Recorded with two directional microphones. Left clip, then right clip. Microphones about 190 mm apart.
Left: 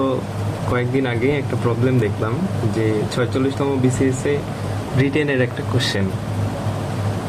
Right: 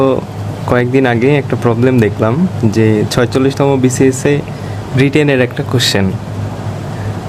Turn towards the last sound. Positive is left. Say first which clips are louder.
# right 8 dB
turn(degrees=-45)  # may be behind; listen again after turning